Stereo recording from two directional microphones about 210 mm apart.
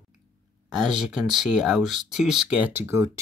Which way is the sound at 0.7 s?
Centre (ahead or behind).